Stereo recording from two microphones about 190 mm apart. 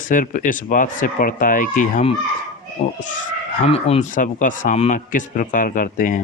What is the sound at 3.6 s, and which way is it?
A man's voice, 35° left (ahead or behind).